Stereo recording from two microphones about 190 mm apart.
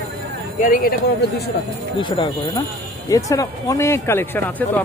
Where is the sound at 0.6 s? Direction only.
45° left (ahead or behind).